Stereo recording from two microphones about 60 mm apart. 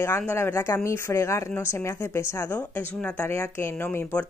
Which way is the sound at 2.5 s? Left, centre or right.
Left.